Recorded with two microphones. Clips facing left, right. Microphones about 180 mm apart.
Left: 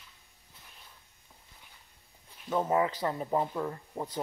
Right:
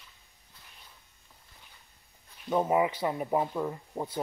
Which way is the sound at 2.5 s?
10° right (ahead or behind).